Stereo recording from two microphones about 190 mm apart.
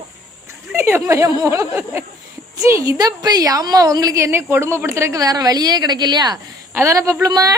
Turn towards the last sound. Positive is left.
turn(degrees=-15)  # may be behind; listen again after turning